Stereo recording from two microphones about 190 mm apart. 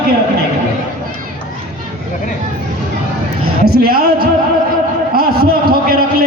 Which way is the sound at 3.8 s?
55° right (ahead or behind).